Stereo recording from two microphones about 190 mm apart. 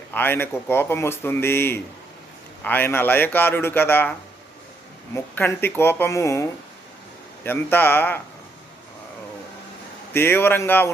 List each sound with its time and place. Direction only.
0.1 s speech: 10° left (ahead or behind)
5.1 s speech: 10° left (ahead or behind)
10.1 s speech: 10° left (ahead or behind)